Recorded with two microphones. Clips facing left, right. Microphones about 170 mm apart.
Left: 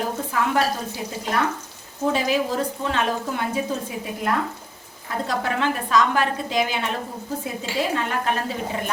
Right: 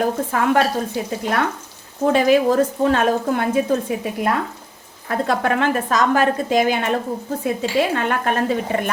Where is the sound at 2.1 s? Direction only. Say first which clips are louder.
Right 8 dB; 55° right (ahead or behind).